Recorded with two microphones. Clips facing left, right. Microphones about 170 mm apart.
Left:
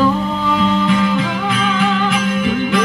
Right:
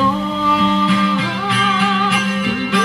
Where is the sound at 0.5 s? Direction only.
50° left (ahead or behind).